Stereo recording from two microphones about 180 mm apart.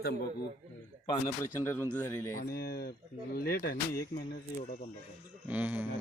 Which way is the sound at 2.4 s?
60° left (ahead or behind).